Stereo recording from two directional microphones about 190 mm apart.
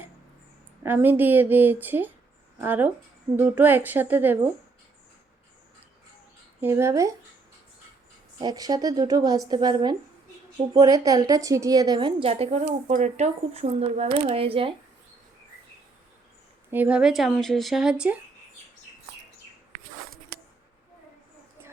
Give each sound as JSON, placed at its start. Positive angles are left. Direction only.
{"t": 0.8, "sound": "a woman's voice", "side_deg": -10}
{"t": 6.6, "sound": "a woman's voice", "side_deg": -15}
{"t": 8.4, "sound": "a woman's voice", "side_deg": -20}
{"t": 16.7, "sound": "speech", "side_deg": -5}